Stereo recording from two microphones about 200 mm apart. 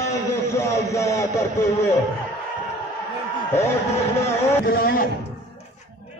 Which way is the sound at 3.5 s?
15° left (ahead or behind).